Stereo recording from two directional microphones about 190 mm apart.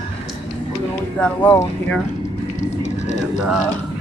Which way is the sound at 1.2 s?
10° left (ahead or behind).